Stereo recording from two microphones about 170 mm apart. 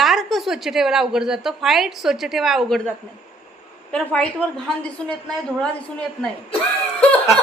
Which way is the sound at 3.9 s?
5° left (ahead or behind).